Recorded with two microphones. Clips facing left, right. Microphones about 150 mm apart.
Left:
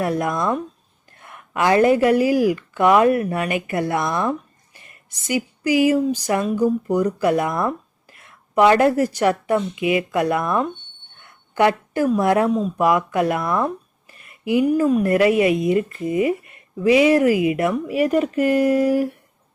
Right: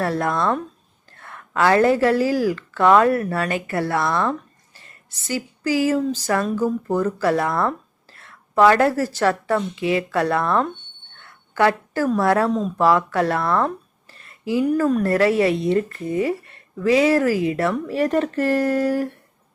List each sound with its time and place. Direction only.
0.0 s a woman's voice: 15° left (ahead or behind)